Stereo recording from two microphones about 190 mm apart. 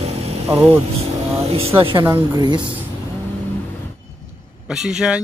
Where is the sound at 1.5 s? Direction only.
30° right (ahead or behind).